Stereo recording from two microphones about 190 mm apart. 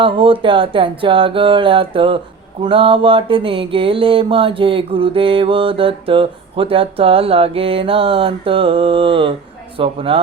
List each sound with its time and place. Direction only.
0.0 s mantra: 25° right (ahead or behind)